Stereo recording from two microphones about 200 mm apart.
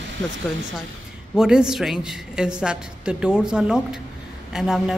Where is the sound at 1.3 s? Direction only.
5° right (ahead or behind).